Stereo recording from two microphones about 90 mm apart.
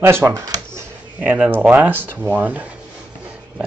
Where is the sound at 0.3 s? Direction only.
35° right (ahead or behind).